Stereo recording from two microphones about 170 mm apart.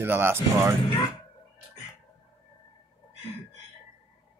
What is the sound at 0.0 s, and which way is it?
Speech, 15° right (ahead or behind).